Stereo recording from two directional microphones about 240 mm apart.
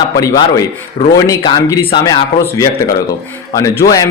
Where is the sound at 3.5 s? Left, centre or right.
Centre.